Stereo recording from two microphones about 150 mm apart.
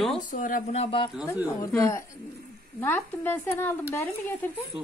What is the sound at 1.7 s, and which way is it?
Speech, 20° left (ahead or behind).